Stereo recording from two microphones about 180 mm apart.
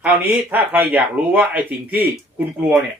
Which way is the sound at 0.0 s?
10° right (ahead or behind).